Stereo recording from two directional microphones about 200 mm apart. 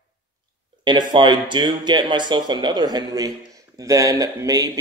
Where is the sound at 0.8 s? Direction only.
20° right (ahead or behind).